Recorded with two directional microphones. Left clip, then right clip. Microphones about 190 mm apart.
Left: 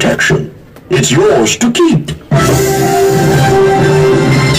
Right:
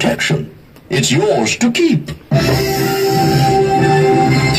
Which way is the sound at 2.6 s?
25° right (ahead or behind).